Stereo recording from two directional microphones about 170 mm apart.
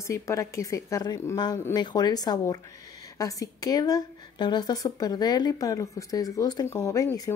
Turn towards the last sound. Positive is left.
turn(degrees=20)  # may be behind; listen again after turning